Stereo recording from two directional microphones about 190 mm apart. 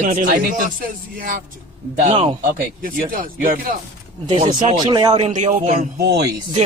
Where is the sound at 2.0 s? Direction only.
25° right (ahead or behind).